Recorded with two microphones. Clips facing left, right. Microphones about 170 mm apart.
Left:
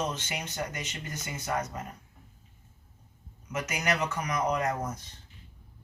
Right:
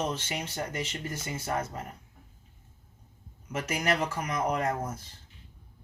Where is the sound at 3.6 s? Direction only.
30° right (ahead or behind).